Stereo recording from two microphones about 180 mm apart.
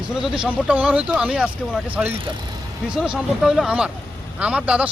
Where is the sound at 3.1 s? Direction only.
Centre (ahead or behind).